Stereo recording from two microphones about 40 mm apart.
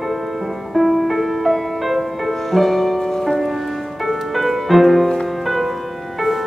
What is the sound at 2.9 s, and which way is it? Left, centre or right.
Music, centre.